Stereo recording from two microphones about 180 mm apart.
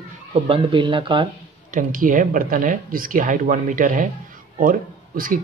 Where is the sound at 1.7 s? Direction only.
50° right (ahead or behind).